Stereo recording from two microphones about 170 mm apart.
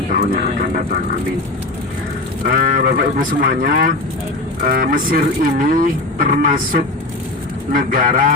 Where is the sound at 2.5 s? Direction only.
55° right (ahead or behind).